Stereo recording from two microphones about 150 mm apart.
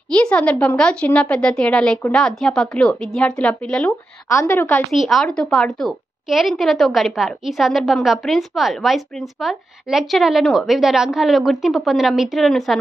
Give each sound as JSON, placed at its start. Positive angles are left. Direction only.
{"t": 0.1, "sound": "a woman's voice", "side_deg": 5}
{"t": 4.3, "sound": "a woman's voice", "side_deg": 20}
{"t": 4.9, "sound": "a woman's voice", "side_deg": 0}